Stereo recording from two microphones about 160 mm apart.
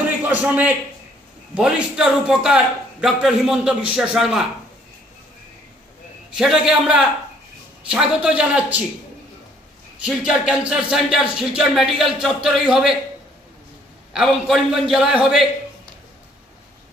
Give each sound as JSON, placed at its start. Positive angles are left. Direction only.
{"t": 0.2, "sound": "a man's voice", "side_deg": -10}
{"t": 6.3, "sound": "a man's voice", "side_deg": -5}
{"t": 10.0, "sound": "a man's voice", "side_deg": -5}
{"t": 14.1, "sound": "a man's voice", "side_deg": 0}